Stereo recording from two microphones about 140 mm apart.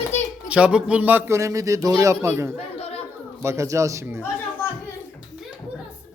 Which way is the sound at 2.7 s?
45° left (ahead or behind).